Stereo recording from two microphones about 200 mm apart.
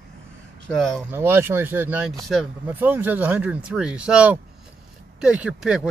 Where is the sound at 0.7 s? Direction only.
5° left (ahead or behind).